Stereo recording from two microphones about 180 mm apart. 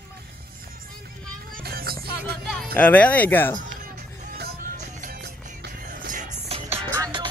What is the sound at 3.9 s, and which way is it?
Music, 65° right (ahead or behind).